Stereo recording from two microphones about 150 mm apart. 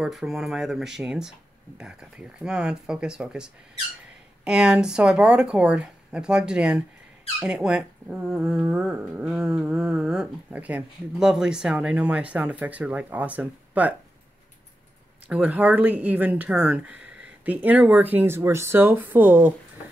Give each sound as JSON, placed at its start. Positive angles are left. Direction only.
{"t": 0.0, "sound": "speech", "side_deg": 0}
{"t": 15.2, "sound": "speech", "side_deg": -10}